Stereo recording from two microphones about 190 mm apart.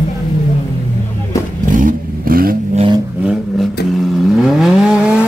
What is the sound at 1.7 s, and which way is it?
Vehicle, 45° right (ahead or behind).